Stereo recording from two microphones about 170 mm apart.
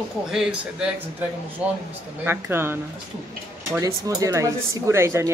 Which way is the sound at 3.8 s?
20° right (ahead or behind).